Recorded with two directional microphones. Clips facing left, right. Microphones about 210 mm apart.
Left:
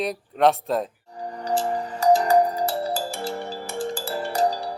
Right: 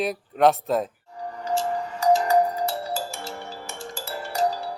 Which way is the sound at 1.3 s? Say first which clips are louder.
Left 1 dB; 30° left (ahead or behind).